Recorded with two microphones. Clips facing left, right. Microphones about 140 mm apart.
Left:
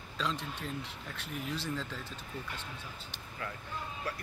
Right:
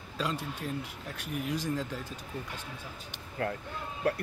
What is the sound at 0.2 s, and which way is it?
Speech, 10° right (ahead or behind).